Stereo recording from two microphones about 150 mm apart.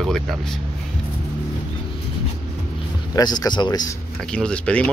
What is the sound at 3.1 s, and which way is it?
Speech, 25° left (ahead or behind).